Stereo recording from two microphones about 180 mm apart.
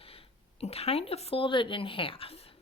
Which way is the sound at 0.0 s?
30° left (ahead or behind).